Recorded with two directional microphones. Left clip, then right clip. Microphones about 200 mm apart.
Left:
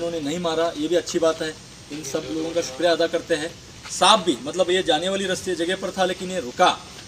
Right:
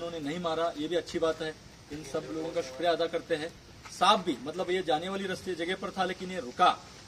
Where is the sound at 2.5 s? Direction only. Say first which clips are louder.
Left 9 dB; 15° right (ahead or behind).